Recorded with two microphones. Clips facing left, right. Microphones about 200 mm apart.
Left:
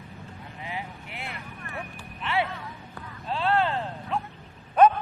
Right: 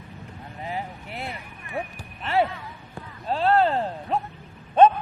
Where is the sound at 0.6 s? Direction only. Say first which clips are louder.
Right 5 dB; 40° right (ahead or behind).